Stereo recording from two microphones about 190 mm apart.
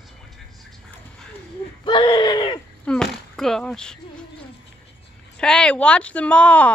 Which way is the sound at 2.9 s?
Centre (ahead or behind).